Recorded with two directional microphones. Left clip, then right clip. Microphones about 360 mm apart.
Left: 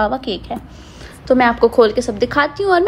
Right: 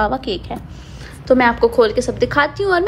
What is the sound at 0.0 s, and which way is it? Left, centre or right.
A woman's voice, centre.